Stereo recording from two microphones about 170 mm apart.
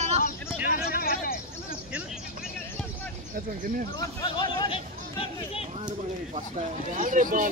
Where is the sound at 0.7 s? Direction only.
60° left (ahead or behind).